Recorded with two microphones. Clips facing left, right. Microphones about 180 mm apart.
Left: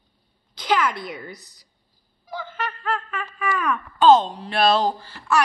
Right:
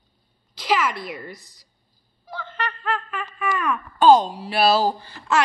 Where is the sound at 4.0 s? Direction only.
10° right (ahead or behind).